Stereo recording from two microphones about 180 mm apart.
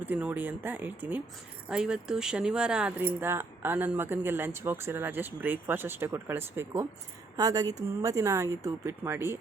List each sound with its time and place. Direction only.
0.0 s speech: 10° right (ahead or behind)